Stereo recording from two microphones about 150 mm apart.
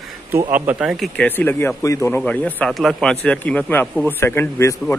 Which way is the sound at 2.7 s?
Centre (ahead or behind).